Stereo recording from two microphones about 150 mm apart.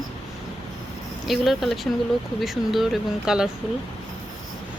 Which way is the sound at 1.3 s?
Centre (ahead or behind).